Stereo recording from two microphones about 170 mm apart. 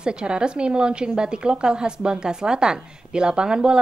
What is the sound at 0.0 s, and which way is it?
A woman's voice, 5° right (ahead or behind).